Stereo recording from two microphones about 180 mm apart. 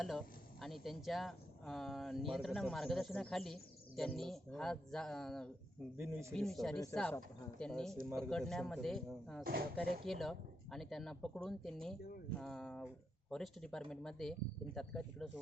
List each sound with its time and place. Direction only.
0.0 s speech: centre (ahead or behind)
9.4 s speech: 55° right (ahead or behind)
10.1 s speech: centre (ahead or behind)